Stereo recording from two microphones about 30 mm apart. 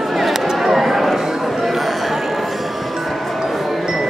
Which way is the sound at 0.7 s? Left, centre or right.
Centre.